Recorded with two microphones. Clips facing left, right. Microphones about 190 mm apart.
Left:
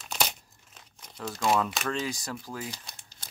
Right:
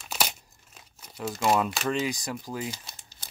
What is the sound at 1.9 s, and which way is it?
Speech, 15° right (ahead or behind).